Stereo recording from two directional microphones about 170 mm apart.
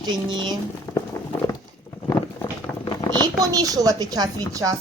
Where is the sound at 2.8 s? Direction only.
25° left (ahead or behind).